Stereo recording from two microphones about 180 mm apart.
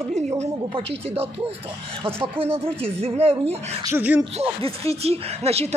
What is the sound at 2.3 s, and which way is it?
Speech, 30° right (ahead or behind).